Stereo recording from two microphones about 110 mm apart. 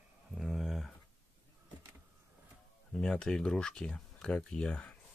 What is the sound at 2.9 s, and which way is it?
Speech, 5° left (ahead or behind).